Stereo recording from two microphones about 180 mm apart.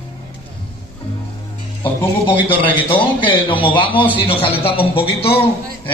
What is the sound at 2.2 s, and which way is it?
A man's voice, 30° left (ahead or behind).